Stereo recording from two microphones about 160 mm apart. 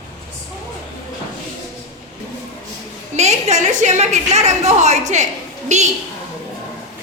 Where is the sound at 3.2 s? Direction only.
45° right (ahead or behind).